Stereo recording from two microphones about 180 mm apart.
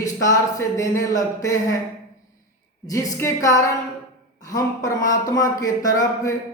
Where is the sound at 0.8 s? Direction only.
20° left (ahead or behind).